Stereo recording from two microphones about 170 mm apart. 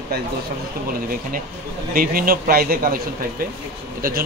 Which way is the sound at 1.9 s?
60° right (ahead or behind).